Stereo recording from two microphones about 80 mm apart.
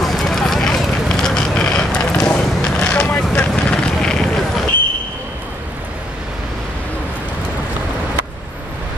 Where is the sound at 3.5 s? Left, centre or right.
Centre.